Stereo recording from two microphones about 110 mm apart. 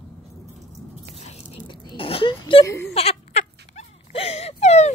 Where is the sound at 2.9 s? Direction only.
75° left (ahead or behind).